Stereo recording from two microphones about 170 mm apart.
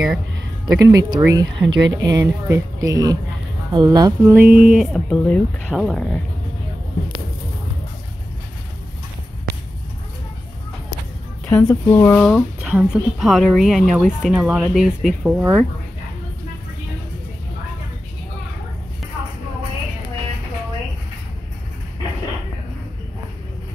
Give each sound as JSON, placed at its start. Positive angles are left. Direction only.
{"t": 0.7, "sound": "speech", "side_deg": -20}
{"t": 2.2, "sound": "speech", "side_deg": -15}
{"t": 4.2, "sound": "speech", "side_deg": -10}
{"t": 5.1, "sound": "speech", "side_deg": 10}
{"t": 11.4, "sound": "speech", "side_deg": 10}
{"t": 12.3, "sound": "speech", "side_deg": 5}